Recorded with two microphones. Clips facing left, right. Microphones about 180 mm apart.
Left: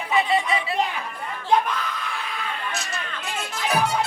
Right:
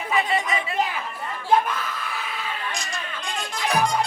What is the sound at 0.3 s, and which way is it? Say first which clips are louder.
Chatter: left 2 dB; 40° right (ahead or behind).